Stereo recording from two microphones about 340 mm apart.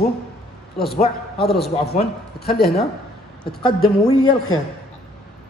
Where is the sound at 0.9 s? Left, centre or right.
Centre.